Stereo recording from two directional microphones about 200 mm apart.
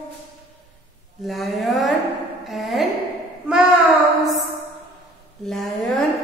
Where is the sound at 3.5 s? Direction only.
5° right (ahead or behind).